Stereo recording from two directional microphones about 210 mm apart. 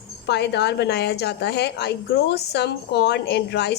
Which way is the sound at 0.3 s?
55° left (ahead or behind).